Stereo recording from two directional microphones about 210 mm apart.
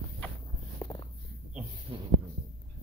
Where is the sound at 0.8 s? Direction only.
20° left (ahead or behind).